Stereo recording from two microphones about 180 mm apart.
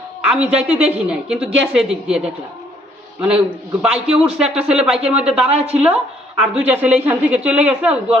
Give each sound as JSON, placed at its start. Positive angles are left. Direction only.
{"t": 0.3, "sound": "a man's voice", "side_deg": -5}
{"t": 5.5, "sound": "a woman's voice", "side_deg": -35}
{"t": 5.7, "sound": "a man's voice", "side_deg": -5}